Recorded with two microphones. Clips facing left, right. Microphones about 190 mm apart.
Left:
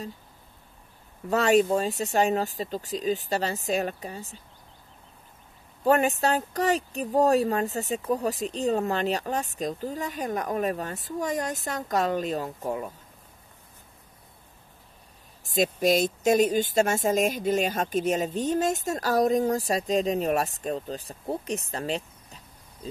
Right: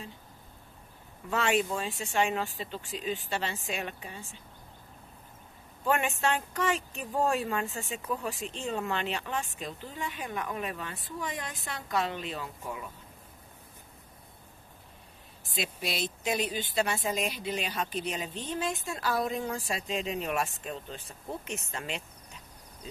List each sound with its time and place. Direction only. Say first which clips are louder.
1.3 s speech: left 8 dB; 40° left (ahead or behind)
5.9 s speech: left 6 dB; 40° left (ahead or behind)
15.4 s speech: left 12 dB; 45° left (ahead or behind)